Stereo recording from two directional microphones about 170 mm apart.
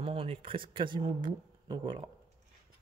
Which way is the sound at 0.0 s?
35° right (ahead or behind).